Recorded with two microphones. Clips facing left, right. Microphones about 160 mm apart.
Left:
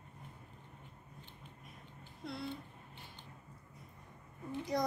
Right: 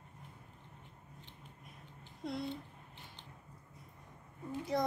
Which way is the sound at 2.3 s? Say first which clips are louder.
Right 3 dB; 20° right (ahead or behind).